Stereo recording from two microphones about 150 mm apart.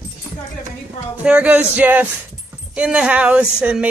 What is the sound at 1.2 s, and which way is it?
Speech, 10° right (ahead or behind).